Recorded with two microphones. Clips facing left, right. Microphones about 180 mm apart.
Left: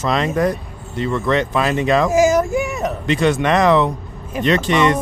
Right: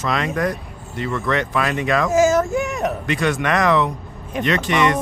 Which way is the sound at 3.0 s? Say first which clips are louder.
Left 7 dB; 25° left (ahead or behind).